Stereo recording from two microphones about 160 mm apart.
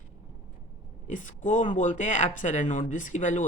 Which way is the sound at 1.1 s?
55° left (ahead or behind).